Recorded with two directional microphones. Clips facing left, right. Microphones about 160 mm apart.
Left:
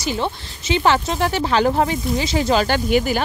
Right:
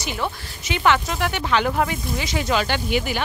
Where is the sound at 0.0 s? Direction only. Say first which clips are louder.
Left 4 dB; 30° left (ahead or behind).